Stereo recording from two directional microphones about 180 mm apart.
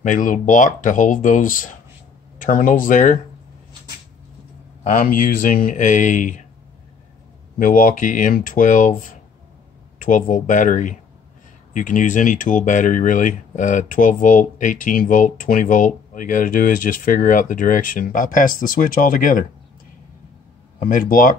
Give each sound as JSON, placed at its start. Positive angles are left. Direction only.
{"t": 0.0, "sound": "speech", "side_deg": 45}
{"t": 4.8, "sound": "speech", "side_deg": 50}
{"t": 7.5, "sound": "speech", "side_deg": 50}
{"t": 9.9, "sound": "speech", "side_deg": 50}
{"t": 20.8, "sound": "speech", "side_deg": 50}